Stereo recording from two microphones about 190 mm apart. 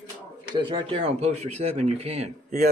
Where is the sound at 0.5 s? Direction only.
25° right (ahead or behind).